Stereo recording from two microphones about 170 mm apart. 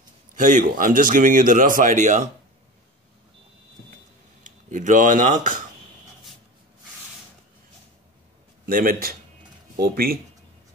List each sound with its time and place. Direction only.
0.4 s speech: 50° right (ahead or behind)
4.4 s speech: 50° right (ahead or behind)
8.6 s speech: 55° right (ahead or behind)